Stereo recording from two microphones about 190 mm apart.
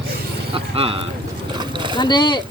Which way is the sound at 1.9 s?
25° left (ahead or behind).